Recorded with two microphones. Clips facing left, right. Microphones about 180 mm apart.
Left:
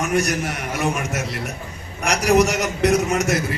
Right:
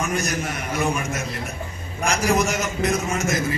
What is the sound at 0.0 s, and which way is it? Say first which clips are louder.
A man's voice: left 4 dB; 70° left (ahead or behind).